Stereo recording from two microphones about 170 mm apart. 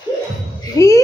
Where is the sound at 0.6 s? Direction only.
20° left (ahead or behind).